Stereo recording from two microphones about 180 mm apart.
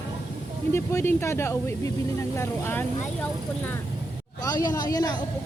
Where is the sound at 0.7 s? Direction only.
15° left (ahead or behind).